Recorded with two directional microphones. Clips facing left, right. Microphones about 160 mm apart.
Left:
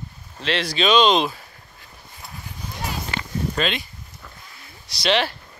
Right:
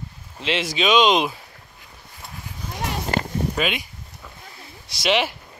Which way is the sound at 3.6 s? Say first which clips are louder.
Left 1 dB; 10° right (ahead or behind).